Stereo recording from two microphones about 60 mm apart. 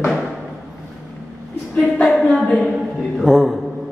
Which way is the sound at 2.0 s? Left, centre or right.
Centre.